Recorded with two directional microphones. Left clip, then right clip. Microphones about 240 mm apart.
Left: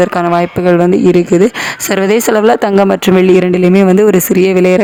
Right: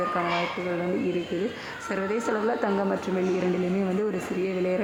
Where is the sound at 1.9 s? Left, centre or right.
Left.